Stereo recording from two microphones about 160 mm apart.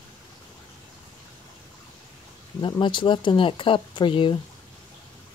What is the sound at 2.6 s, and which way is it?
Speech, 30° left (ahead or behind).